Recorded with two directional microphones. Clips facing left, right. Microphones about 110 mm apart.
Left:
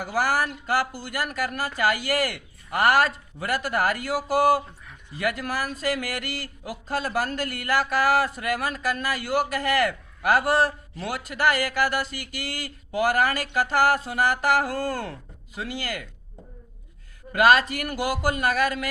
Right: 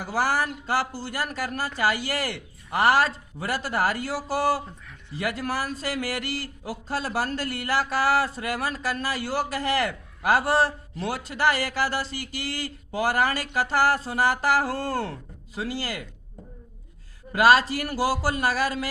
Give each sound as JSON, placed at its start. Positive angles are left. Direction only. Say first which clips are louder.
{"t": 0.1, "sound": "speech", "louder": "even", "side_deg": -30}
{"t": 17.3, "sound": "speech", "louder": "even", "side_deg": -35}